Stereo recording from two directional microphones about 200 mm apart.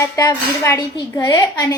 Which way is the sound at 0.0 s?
15° left (ahead or behind).